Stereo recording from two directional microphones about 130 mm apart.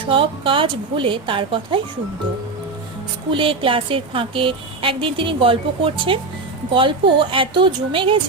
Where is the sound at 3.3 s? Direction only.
40° right (ahead or behind).